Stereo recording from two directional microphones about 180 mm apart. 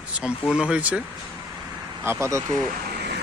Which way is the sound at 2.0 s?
15° right (ahead or behind).